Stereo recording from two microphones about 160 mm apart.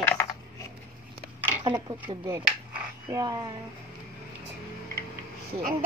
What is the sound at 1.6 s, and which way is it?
Speech, 25° right (ahead or behind).